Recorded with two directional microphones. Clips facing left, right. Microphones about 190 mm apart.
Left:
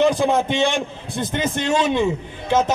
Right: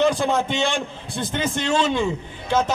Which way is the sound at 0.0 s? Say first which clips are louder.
Left 3 dB; 15° left (ahead or behind).